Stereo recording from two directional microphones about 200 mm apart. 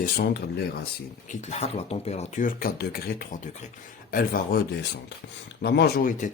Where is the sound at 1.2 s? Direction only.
35° left (ahead or behind).